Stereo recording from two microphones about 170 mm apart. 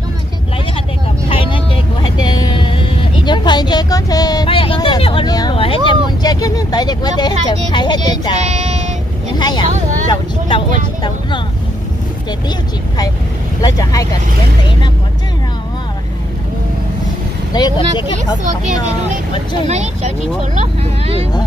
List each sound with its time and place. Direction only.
1.4 s vehicle: 30° left (ahead or behind)
5.9 s speech: 25° left (ahead or behind)
8.5 s a sound: 40° right (ahead or behind)
9.4 s speech: 25° left (ahead or behind)
17.5 s speech: 25° left (ahead or behind)
20.6 s speech: 35° right (ahead or behind)